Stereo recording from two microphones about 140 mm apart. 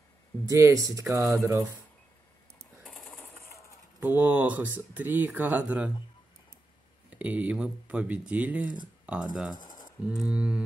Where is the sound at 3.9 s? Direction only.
15° right (ahead or behind).